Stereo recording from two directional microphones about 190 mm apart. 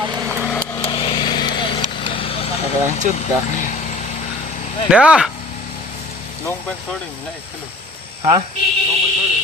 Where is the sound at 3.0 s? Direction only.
45° right (ahead or behind).